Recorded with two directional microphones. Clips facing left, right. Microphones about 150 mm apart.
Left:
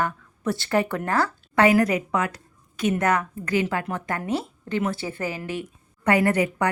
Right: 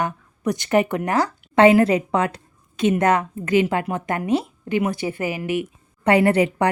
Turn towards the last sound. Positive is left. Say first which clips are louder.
# right 4 dB
turn(degrees=-25)  # may be behind; listen again after turning